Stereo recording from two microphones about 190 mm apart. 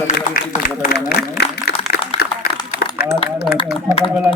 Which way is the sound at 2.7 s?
60° left (ahead or behind).